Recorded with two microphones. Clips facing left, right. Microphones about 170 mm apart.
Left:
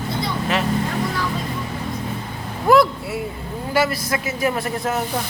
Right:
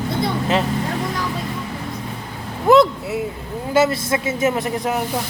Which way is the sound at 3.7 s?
25° right (ahead or behind).